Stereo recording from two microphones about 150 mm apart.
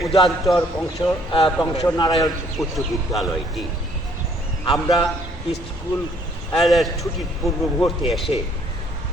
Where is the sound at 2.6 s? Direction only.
Centre (ahead or behind).